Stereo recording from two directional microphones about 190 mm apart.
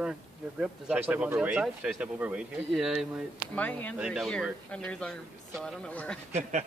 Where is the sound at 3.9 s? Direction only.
5° right (ahead or behind).